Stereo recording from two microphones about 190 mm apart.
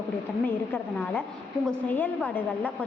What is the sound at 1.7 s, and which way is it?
A woman's voice, 10° left (ahead or behind).